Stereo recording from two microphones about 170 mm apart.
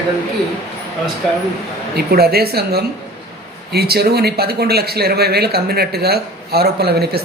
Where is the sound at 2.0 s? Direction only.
65° right (ahead or behind).